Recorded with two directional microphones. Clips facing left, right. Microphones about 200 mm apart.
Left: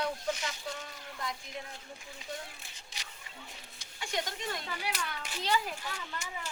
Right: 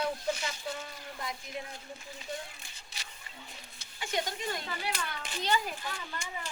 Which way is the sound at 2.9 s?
15° left (ahead or behind).